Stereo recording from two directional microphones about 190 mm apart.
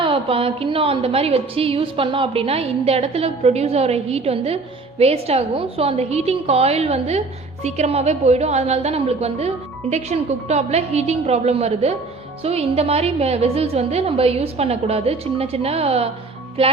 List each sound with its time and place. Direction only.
0.0 s a woman's voice: 30° right (ahead or behind)